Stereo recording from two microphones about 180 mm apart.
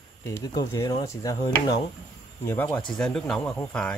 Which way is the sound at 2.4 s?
10° left (ahead or behind).